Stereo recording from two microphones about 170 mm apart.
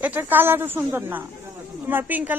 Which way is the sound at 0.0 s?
10° right (ahead or behind).